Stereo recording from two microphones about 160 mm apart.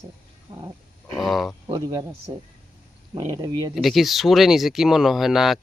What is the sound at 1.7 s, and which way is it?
Speech, 25° right (ahead or behind).